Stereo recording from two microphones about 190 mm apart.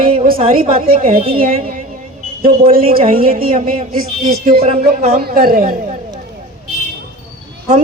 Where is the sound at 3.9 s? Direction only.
50° right (ahead or behind).